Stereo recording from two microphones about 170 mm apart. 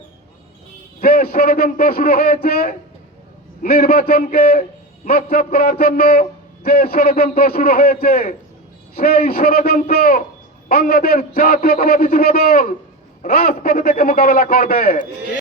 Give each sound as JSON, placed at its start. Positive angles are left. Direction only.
{"t": 1.0, "sound": "a man's voice", "side_deg": 60}